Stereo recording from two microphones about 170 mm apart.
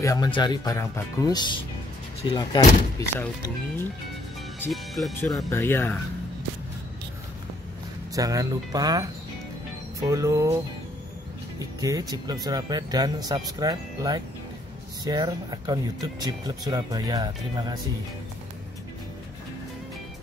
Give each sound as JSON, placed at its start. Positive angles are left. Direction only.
{"t": 0.0, "sound": "speech", "side_deg": 20}
{"t": 4.6, "sound": "speech", "side_deg": 0}
{"t": 5.1, "sound": "speech", "side_deg": 15}
{"t": 8.1, "sound": "speech", "side_deg": -20}
{"t": 11.8, "sound": "speech", "side_deg": -20}